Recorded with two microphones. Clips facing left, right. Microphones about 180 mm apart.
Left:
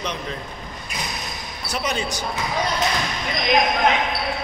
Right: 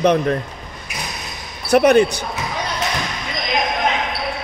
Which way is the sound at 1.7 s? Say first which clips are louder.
Right 14 dB; 60° right (ahead or behind).